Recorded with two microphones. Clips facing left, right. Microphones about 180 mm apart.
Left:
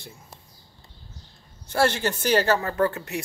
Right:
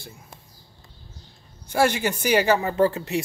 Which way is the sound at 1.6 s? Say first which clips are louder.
Right 1 dB; 15° right (ahead or behind).